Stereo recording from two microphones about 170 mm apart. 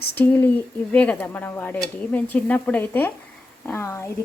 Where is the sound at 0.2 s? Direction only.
10° left (ahead or behind).